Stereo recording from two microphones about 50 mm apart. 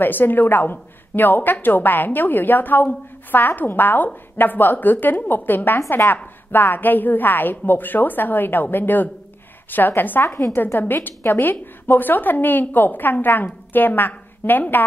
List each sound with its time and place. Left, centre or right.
0.0 s a woman's voice: left
6.0 s a woman's voice: left
6.5 s a woman's voice: left
10.2 s a woman's voice: left
11.1 s a woman's voice: left